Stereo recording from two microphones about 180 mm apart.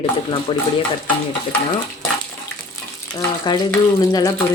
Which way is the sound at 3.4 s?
20° left (ahead or behind).